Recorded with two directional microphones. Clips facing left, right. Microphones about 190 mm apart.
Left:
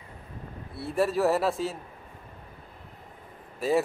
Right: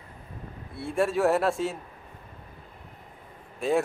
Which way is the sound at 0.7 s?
Centre (ahead or behind).